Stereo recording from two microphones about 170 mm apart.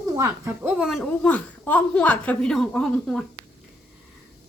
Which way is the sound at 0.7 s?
Centre (ahead or behind).